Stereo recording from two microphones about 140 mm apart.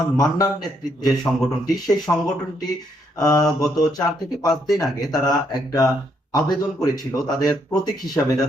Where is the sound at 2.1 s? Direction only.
15° left (ahead or behind).